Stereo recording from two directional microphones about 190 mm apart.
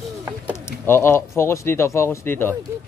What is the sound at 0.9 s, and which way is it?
Speech, 15° left (ahead or behind).